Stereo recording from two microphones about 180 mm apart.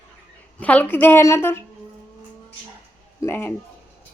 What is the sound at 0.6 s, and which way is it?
A woman's voice, 10° left (ahead or behind).